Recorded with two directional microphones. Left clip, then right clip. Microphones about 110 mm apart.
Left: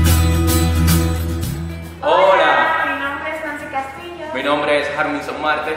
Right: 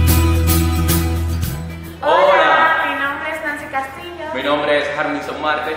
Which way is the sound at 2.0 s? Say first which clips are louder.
Even; 10° left (ahead or behind).